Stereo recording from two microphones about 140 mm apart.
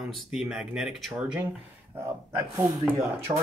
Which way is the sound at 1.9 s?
20° right (ahead or behind).